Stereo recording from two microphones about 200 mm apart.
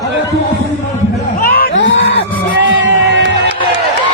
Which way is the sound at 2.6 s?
65° right (ahead or behind).